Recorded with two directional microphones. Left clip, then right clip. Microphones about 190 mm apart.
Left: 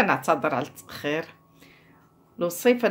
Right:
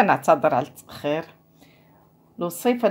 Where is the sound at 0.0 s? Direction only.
35° right (ahead or behind).